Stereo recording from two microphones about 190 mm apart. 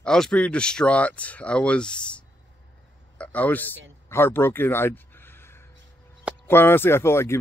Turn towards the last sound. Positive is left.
turn(degrees=15)  # may be behind; listen again after turning